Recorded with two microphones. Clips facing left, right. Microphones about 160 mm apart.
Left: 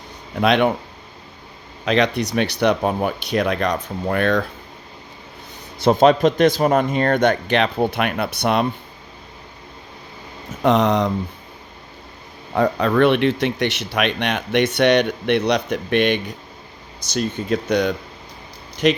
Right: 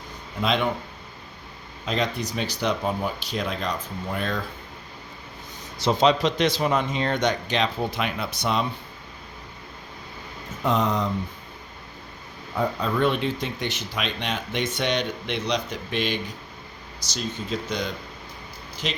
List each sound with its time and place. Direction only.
0.4 s speech: 70° left (ahead or behind)
1.8 s speech: 75° left (ahead or behind)
5.8 s speech: 55° left (ahead or behind)
10.6 s speech: 75° left (ahead or behind)
12.5 s speech: 70° left (ahead or behind)